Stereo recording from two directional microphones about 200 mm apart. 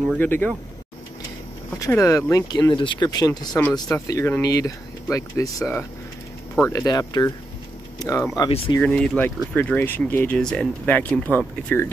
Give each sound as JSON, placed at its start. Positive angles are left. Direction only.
{"t": 0.2, "sound": "speech", "side_deg": 10}
{"t": 1.8, "sound": "speech", "side_deg": 15}
{"t": 8.7, "sound": "speech", "side_deg": 5}